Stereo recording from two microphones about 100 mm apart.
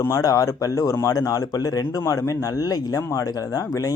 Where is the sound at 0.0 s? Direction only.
35° left (ahead or behind).